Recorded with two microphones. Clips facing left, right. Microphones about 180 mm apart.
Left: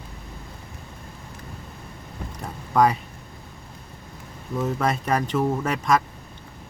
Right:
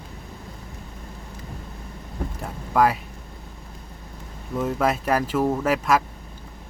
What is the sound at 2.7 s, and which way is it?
Speech, 5° right (ahead or behind).